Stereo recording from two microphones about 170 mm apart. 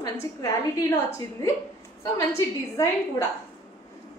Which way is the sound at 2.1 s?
15° left (ahead or behind).